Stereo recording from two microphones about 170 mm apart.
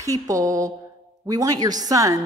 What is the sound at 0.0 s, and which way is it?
A man's voice, 20° right (ahead or behind).